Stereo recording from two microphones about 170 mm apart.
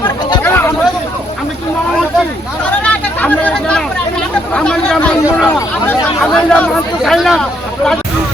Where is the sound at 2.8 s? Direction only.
10° left (ahead or behind).